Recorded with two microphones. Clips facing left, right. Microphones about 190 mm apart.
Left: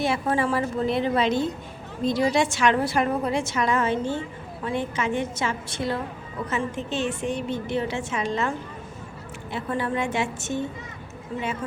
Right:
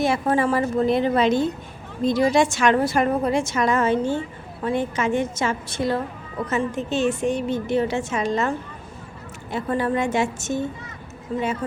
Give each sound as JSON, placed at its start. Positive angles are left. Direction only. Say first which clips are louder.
{"t": 0.0, "sound": "a woman's voice", "louder": "right 3 dB", "side_deg": -45}
{"t": 9.5, "sound": "a woman's voice", "louder": "right 4 dB", "side_deg": -40}